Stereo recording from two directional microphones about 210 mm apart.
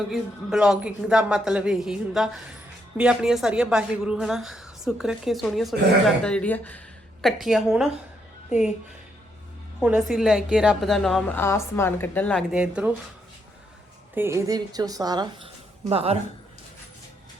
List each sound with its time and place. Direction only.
0.1 s a woman's voice: centre (ahead or behind)
9.8 s a woman's voice: 5° right (ahead or behind)
14.2 s a woman's voice: 15° right (ahead or behind); by 16.1 s 30° right (ahead or behind)